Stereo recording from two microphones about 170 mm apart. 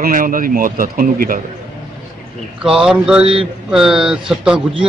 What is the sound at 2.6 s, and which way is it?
A man's voice, 5° right (ahead or behind).